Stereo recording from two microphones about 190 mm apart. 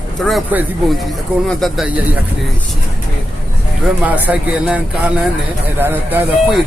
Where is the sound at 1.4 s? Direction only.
Centre (ahead or behind).